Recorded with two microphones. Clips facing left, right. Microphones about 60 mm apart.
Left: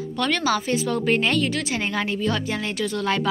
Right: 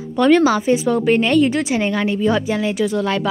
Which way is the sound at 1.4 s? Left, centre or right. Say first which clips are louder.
Right 7 dB; right.